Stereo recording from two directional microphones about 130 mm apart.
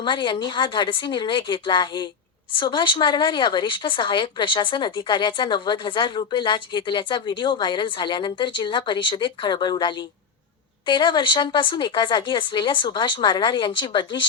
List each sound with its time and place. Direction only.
0.0 s a woman's voice: 35° left (ahead or behind)